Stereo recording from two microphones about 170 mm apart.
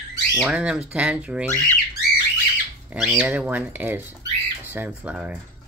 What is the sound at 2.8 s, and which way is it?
Speech, 10° right (ahead or behind).